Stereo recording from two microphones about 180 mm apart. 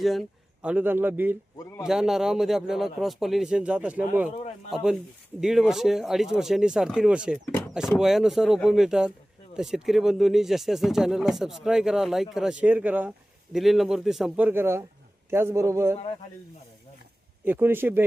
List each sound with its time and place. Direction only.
0.0 s a man's voice: centre (ahead or behind)
17.4 s a man's voice: 10° right (ahead or behind)